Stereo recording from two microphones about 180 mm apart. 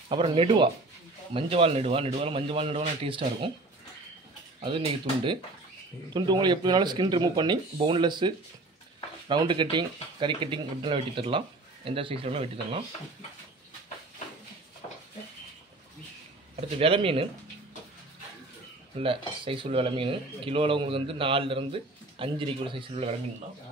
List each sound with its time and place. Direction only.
0.1 s speech: 30° right (ahead or behind)
4.6 s speech: 30° right (ahead or behind)
16.6 s speech: 35° right (ahead or behind)
18.9 s speech: 30° right (ahead or behind)